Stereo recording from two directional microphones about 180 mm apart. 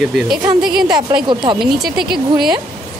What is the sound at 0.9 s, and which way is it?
Speech, 25° right (ahead or behind).